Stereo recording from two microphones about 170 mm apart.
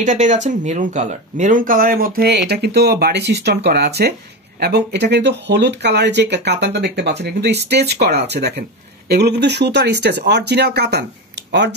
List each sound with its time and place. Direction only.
0.0 s speech: 45° right (ahead or behind); by 11.7 s 90° right